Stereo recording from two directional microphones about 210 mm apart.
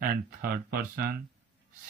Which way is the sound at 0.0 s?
45° right (ahead or behind).